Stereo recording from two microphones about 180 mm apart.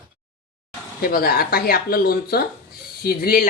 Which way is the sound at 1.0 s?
55° left (ahead or behind).